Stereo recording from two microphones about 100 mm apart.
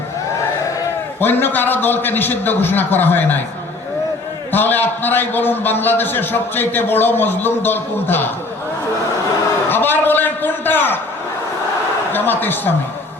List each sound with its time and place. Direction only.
1.2 s a man's voice: 20° left (ahead or behind)
4.5 s a man's voice: 20° left (ahead or behind)
9.6 s a man's voice: 20° left (ahead or behind)
12.1 s a man's voice: 20° left (ahead or behind)